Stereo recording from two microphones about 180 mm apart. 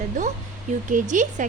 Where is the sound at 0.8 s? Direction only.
45° right (ahead or behind).